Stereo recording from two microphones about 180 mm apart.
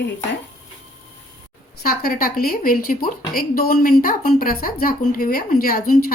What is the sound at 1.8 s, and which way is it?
A woman's voice, 55° left (ahead or behind).